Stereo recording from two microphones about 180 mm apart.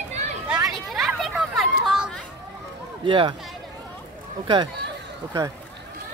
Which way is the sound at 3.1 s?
25° right (ahead or behind).